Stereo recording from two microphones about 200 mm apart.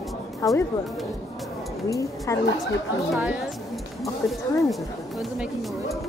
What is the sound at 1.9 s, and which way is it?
Speech, 15° left (ahead or behind).